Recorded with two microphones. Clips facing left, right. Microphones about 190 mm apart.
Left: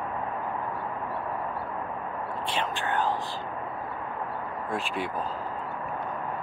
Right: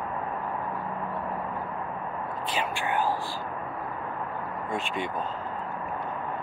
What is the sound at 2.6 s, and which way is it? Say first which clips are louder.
Speech: right 1 dB; 10° right (ahead or behind).